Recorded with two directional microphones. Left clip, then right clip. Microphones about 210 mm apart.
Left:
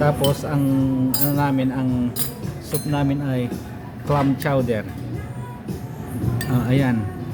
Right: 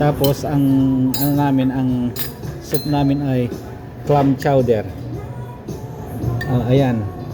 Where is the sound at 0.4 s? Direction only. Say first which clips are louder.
Right 4 dB; 5° right (ahead or behind).